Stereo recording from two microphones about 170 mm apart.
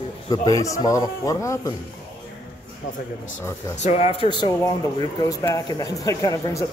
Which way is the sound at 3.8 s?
40° left (ahead or behind).